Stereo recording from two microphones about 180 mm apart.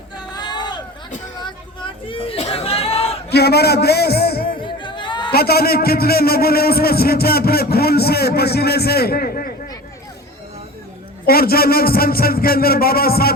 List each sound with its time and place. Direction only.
0.3 s hubbub: 25° left (ahead or behind)
1.4 s a sound: 25° left (ahead or behind)
3.2 s a sound: 65° left (ahead or behind)
4.6 s music: 25° left (ahead or behind)
5.3 s a man's voice: 60° left (ahead or behind)
11.3 s a man's voice: 55° left (ahead or behind)